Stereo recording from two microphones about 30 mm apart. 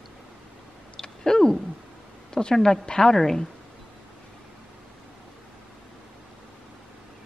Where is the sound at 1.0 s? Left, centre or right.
Centre.